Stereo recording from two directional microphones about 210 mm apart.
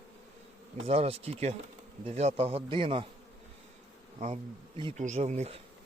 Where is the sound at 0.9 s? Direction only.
30° right (ahead or behind).